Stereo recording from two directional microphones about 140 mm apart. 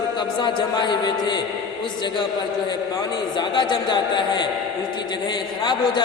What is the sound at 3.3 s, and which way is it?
Speech, 35° left (ahead or behind).